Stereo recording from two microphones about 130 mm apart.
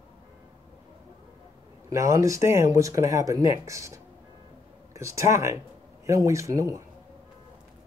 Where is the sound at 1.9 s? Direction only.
25° right (ahead or behind).